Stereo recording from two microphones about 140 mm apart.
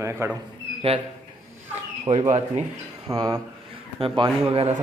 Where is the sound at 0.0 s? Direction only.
20° right (ahead or behind).